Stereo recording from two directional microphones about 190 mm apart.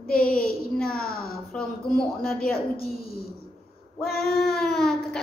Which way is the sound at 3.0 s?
50° left (ahead or behind).